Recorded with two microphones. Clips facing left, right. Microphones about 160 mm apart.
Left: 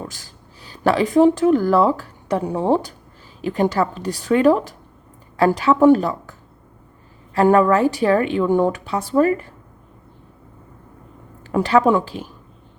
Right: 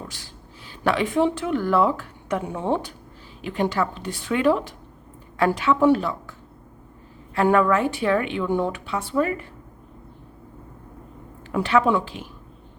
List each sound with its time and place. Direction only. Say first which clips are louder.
0.1 s speech: right 1 dB; 40° left (ahead or behind)
7.3 s speech: left 4 dB; 40° left (ahead or behind)
11.5 s speech: left 4 dB; 40° left (ahead or behind)